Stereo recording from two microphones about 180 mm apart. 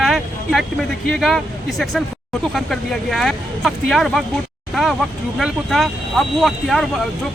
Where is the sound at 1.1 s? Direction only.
Centre (ahead or behind).